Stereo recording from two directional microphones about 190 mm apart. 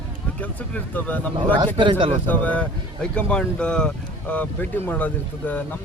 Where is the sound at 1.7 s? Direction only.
25° right (ahead or behind).